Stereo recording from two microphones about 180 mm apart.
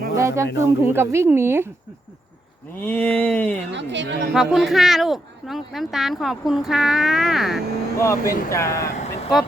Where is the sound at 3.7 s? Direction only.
80° right.